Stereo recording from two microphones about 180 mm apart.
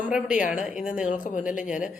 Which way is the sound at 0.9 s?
45° left (ahead or behind).